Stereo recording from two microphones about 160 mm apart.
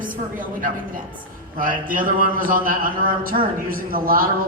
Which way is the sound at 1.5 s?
60° right (ahead or behind).